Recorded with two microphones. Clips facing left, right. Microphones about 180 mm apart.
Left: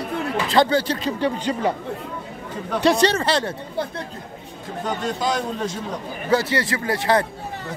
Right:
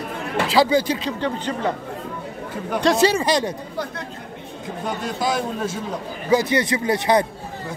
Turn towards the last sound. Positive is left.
turn(degrees=-20)  # may be behind; listen again after turning